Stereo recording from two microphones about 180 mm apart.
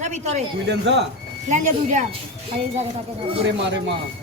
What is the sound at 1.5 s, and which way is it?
Speech, 40° right (ahead or behind).